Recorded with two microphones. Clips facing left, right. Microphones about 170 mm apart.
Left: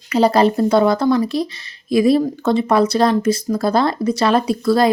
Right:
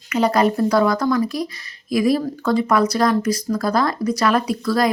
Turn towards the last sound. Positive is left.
turn(degrees=25)  # may be behind; listen again after turning